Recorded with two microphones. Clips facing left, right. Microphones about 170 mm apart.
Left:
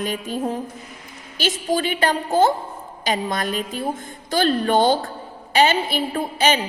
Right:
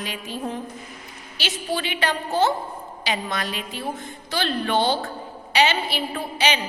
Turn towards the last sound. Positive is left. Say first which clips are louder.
# left 4 dB
turn(degrees=45)  # may be behind; listen again after turning